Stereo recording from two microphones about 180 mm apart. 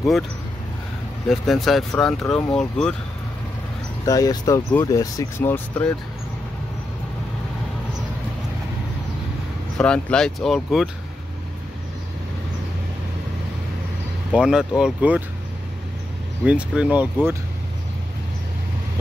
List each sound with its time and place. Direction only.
1.3 s speech: centre (ahead or behind)
4.0 s speech: 20° left (ahead or behind)
9.8 s speech: 5° left (ahead or behind)
14.3 s speech: 5° right (ahead or behind)
16.4 s speech: 5° right (ahead or behind)